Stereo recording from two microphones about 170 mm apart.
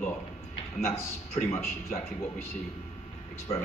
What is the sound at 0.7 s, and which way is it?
Speech, 15° left (ahead or behind).